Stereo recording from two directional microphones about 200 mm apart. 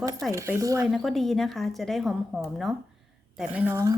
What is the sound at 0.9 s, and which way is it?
A woman's voice, centre (ahead or behind).